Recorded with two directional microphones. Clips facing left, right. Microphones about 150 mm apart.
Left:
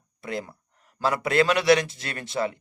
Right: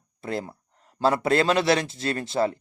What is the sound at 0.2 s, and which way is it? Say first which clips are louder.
A man's voice: right 2 dB; 30° right (ahead or behind).